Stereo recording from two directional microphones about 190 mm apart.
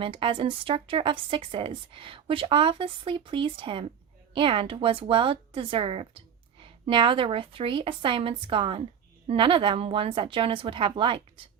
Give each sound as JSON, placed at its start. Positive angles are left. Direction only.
{"t": 0.0, "sound": "speech", "side_deg": -25}